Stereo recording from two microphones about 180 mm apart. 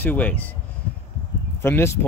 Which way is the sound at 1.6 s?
15° left (ahead or behind).